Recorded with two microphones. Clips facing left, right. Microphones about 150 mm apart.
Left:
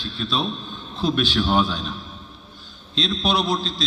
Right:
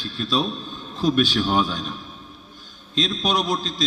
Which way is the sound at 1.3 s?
10° right (ahead or behind).